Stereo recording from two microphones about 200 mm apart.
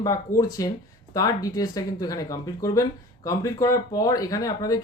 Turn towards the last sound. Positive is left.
turn(degrees=20)  # may be behind; listen again after turning